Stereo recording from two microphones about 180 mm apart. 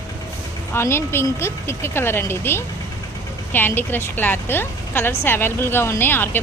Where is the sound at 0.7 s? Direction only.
15° left (ahead or behind).